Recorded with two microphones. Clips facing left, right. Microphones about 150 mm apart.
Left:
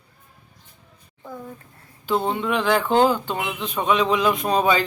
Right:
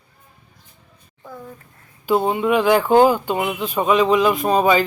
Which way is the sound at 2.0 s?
10° right (ahead or behind).